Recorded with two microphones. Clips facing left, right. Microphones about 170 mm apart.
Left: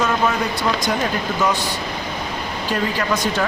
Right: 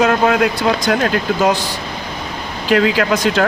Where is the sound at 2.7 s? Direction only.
85° right.